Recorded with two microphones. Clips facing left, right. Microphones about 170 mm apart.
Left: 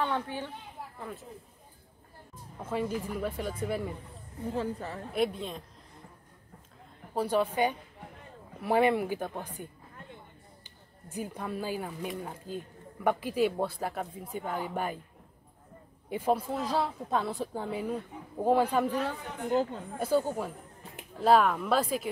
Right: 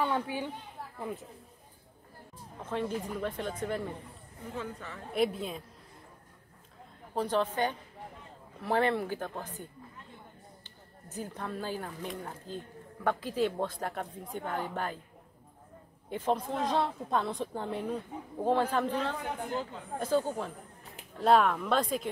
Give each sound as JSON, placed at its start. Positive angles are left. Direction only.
{"t": 0.0, "sound": "speech", "side_deg": -10}
{"t": 2.6, "sound": "speech", "side_deg": 10}
{"t": 4.6, "sound": "speech", "side_deg": 35}
{"t": 5.1, "sound": "a woman's voice", "side_deg": 0}
{"t": 7.2, "sound": "speech", "side_deg": 10}
{"t": 16.1, "sound": "a woman's voice", "side_deg": 10}
{"t": 19.5, "sound": "speech", "side_deg": 40}
{"t": 20.0, "sound": "a woman's voice", "side_deg": 10}